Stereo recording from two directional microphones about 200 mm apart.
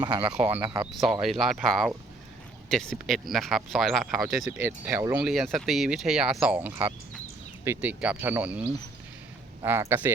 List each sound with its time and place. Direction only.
0.0 s speech: 25° right (ahead or behind)
0.3 s speech: 10° right (ahead or behind)
0.9 s speech: centre (ahead or behind)
4.6 s speech: 15° right (ahead or behind)
5.3 s speech: centre (ahead or behind)